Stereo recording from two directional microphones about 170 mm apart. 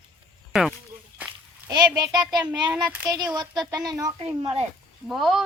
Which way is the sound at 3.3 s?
25° right (ahead or behind).